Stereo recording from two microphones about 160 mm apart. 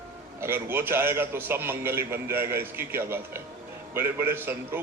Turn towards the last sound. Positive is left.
turn(degrees=-15)  # may be behind; listen again after turning